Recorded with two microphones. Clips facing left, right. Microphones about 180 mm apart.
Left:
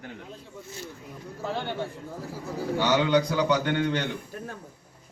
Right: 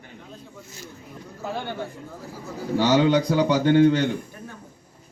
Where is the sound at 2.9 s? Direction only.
30° right (ahead or behind).